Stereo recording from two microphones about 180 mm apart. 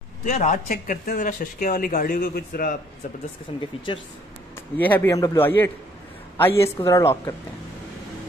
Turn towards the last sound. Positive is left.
turn(degrees=15)  # may be behind; listen again after turning